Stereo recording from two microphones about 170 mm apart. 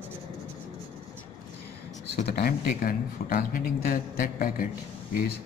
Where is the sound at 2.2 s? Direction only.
65° left (ahead or behind).